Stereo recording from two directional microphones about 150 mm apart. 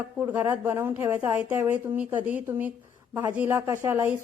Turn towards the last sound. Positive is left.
turn(degrees=-15)  # may be behind; listen again after turning